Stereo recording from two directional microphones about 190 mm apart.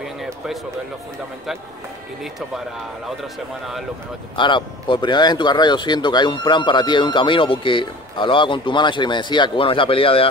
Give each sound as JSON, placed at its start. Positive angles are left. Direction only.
{"t": 4.4, "sound": "speech", "side_deg": 25}